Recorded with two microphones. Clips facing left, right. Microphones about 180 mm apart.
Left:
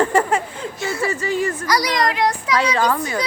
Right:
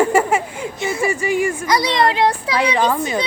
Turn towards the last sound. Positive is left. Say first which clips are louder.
# right 2 dB
turn(degrees=-20)  # may be behind; listen again after turning